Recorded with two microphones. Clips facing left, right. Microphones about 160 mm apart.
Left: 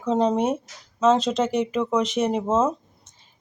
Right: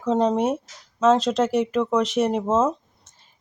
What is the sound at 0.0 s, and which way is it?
Speech, centre (ahead or behind).